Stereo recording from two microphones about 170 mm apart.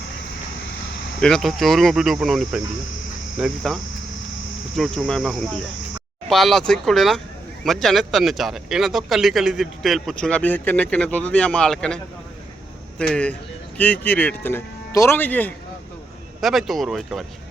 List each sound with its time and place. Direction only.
1.2 s speech: centre (ahead or behind)
13.0 s speech: 5° left (ahead or behind)
16.4 s speech: centre (ahead or behind)